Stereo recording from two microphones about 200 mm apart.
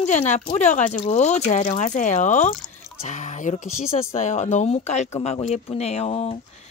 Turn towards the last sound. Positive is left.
turn(degrees=30)  # may be behind; listen again after turning